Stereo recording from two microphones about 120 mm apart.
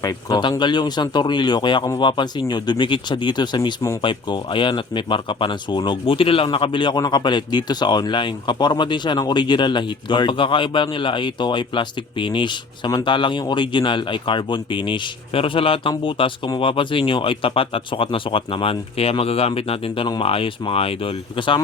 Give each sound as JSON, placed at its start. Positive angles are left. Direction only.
{"t": 0.0, "sound": "speech", "side_deg": 35}